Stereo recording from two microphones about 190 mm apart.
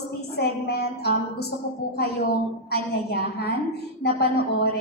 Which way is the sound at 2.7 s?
60° left (ahead or behind).